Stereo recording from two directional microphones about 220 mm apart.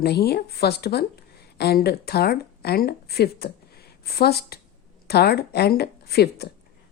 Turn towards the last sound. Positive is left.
turn(degrees=45)  # may be behind; listen again after turning